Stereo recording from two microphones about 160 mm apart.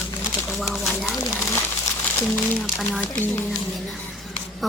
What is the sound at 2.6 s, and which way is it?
Speech, centre (ahead or behind).